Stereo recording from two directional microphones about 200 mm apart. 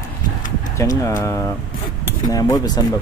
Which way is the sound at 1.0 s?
15° left (ahead or behind).